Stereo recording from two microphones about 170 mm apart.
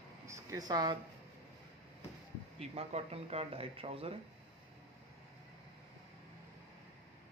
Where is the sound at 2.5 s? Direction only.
35° right (ahead or behind).